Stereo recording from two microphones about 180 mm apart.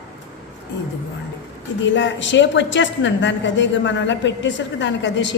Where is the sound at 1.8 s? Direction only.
90° left.